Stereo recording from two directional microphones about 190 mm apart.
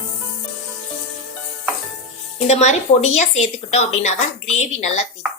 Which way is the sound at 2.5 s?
35° left (ahead or behind).